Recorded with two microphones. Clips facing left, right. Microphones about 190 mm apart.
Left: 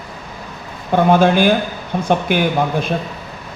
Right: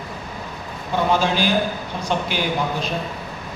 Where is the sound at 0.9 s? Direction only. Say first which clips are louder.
Left 7 dB; 55° left (ahead or behind).